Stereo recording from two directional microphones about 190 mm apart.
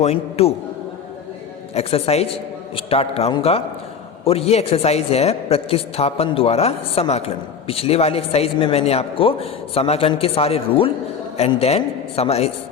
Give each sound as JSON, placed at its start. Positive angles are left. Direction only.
{"t": 0.0, "sound": "a man's voice", "side_deg": 35}
{"t": 1.7, "sound": "a man's voice", "side_deg": 30}